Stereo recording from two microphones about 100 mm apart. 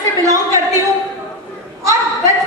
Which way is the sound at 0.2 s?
35° right (ahead or behind).